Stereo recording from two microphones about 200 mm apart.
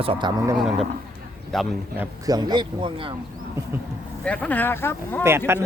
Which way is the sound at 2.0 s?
20° right (ahead or behind).